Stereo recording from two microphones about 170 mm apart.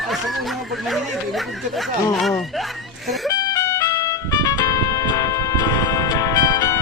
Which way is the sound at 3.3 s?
20° left (ahead or behind).